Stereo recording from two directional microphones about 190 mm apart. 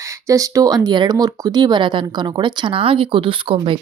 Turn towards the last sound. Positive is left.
turn(degrees=-25)  # may be behind; listen again after turning